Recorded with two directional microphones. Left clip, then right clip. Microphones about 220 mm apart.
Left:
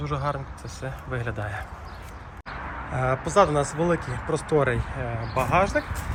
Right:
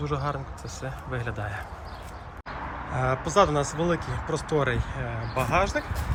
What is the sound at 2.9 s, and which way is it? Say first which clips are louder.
Speech: left 2 dB; 5° right (ahead or behind).